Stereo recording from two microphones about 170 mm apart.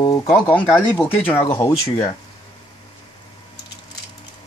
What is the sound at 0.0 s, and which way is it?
Speech, 25° left (ahead or behind).